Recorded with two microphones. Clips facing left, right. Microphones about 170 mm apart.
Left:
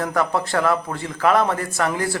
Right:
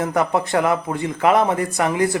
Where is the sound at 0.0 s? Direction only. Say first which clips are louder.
Right 2 dB; 20° right (ahead or behind).